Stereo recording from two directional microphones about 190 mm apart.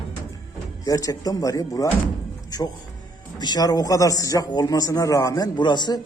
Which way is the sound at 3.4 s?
20° left (ahead or behind).